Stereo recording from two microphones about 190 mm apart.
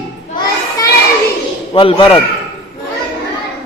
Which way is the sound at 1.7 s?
25° left (ahead or behind).